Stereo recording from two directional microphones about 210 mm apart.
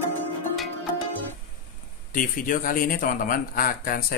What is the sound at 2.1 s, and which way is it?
A man's voice, 40° left (ahead or behind).